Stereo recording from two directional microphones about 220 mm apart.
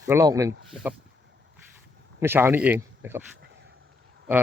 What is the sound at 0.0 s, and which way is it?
Speech, 15° right (ahead or behind).